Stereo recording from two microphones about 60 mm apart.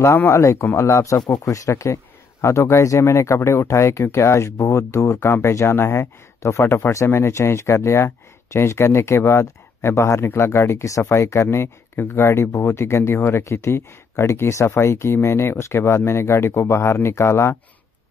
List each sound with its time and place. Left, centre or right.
0.2 s a man's voice: left